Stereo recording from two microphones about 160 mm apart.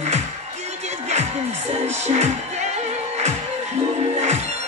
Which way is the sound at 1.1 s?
45° right (ahead or behind).